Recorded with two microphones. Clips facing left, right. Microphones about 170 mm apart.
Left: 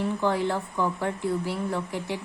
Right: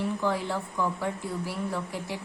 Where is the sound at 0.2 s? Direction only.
65° left (ahead or behind).